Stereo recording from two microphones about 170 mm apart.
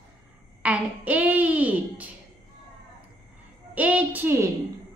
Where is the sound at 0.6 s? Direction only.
10° right (ahead or behind).